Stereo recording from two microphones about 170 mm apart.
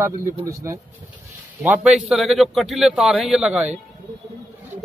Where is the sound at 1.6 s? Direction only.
5° right (ahead or behind).